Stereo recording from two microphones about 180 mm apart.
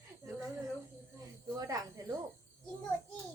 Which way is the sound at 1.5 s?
20° right (ahead or behind).